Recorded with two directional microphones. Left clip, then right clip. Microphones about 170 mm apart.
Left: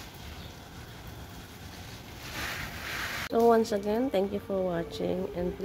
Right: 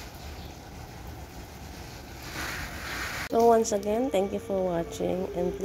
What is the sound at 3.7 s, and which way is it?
Speech, 15° left (ahead or behind).